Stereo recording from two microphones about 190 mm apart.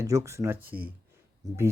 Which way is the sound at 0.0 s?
15° right (ahead or behind).